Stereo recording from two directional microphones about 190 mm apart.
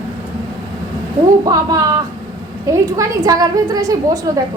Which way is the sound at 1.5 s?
20° right (ahead or behind).